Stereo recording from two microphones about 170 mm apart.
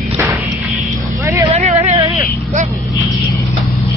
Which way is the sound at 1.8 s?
30° right (ahead or behind).